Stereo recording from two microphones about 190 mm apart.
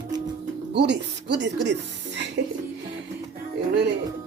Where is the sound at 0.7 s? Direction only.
65° right (ahead or behind).